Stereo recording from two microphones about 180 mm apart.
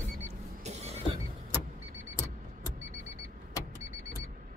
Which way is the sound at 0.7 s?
35° right (ahead or behind).